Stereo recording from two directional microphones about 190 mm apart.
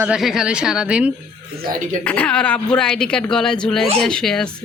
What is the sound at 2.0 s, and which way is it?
Speech, 10° left (ahead or behind).